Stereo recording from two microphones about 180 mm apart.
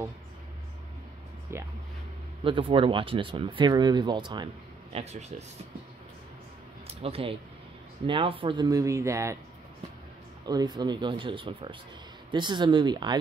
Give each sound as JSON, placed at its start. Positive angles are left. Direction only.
{"t": 1.5, "sound": "speech", "side_deg": -15}
{"t": 2.4, "sound": "speech", "side_deg": -30}
{"t": 4.9, "sound": "speech", "side_deg": -35}
{"t": 6.9, "sound": "speech", "side_deg": -35}
{"t": 10.4, "sound": "speech", "side_deg": -20}